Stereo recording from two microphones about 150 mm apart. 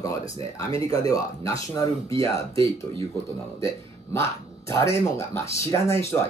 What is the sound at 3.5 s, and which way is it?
Speech, 20° left (ahead or behind).